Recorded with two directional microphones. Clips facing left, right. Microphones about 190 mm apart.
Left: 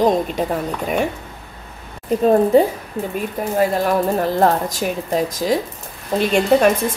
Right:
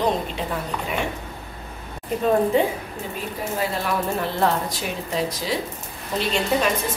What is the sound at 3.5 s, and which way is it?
A woman's voice, 45° left (ahead or behind).